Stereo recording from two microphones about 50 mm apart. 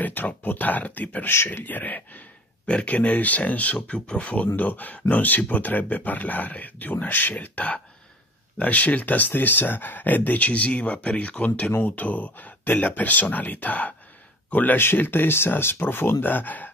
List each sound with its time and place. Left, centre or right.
0.0 s speech: left
2.6 s speech: left
14.8 s speech: left